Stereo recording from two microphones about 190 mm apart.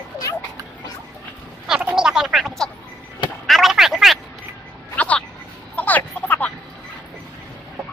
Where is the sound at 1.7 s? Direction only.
5° right (ahead or behind).